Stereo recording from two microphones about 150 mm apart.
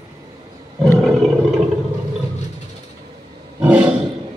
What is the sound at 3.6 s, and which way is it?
Roar, 5° right (ahead or behind).